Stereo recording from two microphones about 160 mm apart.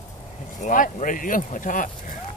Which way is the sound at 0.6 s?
50° left (ahead or behind).